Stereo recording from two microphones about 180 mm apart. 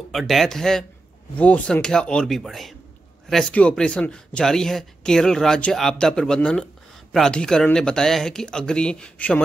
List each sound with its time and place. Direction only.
0.1 s speech: centre (ahead or behind)